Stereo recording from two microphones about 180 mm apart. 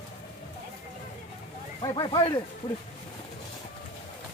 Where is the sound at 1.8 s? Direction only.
25° left (ahead or behind).